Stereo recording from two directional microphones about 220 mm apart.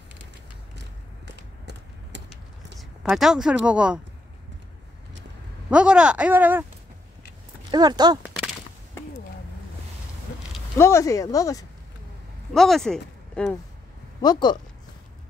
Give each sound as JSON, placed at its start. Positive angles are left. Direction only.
{"t": 0.7, "sound": "a sound", "side_deg": -50}
{"t": 2.8, "sound": "a woman's voice", "side_deg": 0}
{"t": 5.7, "sound": "speech", "side_deg": -5}
{"t": 7.7, "sound": "speech", "side_deg": -20}
{"t": 8.2, "sound": "a sound", "side_deg": 0}
{"t": 10.8, "sound": "speech", "side_deg": 10}
{"t": 12.5, "sound": "speech", "side_deg": 0}
{"t": 14.2, "sound": "speech", "side_deg": 20}